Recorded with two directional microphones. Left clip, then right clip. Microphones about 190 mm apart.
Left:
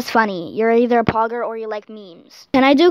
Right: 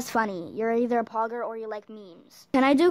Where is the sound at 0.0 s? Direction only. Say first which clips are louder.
Left 10 dB; 25° left (ahead or behind).